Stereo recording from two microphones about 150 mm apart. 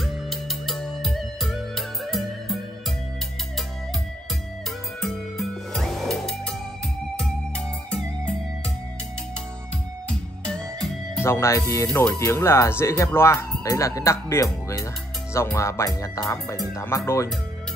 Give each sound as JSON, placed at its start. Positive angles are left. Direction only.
{"t": 0.0, "sound": "music", "side_deg": 0}
{"t": 5.0, "sound": "music", "side_deg": 0}
{"t": 10.0, "sound": "music", "side_deg": 5}
{"t": 11.2, "sound": "speech", "side_deg": 20}